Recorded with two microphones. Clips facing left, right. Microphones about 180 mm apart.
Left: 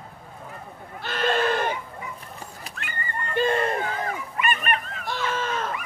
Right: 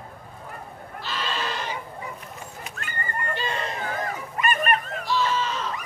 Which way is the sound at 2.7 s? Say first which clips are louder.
Right 1 dB; 35° left (ahead or behind).